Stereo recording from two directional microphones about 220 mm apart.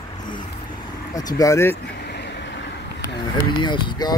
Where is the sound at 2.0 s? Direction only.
50° left (ahead or behind).